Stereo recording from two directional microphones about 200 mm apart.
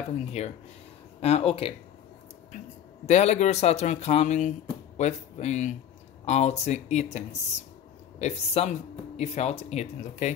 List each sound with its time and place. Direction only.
0.2 s speech: 35° left (ahead or behind)
3.1 s speech: 35° left (ahead or behind)